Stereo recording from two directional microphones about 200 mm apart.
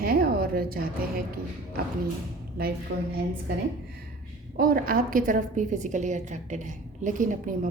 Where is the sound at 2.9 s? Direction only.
55° right (ahead or behind).